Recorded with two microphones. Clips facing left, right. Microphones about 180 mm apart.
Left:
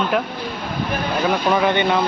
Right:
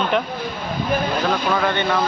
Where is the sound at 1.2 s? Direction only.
15° left (ahead or behind).